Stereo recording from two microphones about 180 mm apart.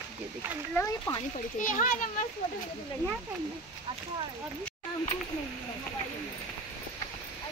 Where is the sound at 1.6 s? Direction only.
45° left (ahead or behind).